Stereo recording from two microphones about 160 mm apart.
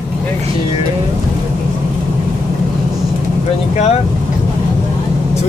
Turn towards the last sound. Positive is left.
turn(degrees=45)  # may be behind; listen again after turning